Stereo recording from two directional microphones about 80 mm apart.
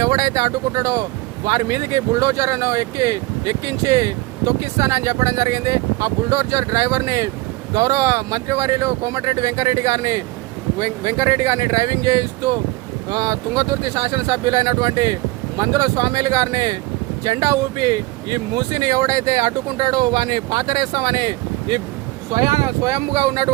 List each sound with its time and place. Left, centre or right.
0.0 s speech: right
22.3 s speech: right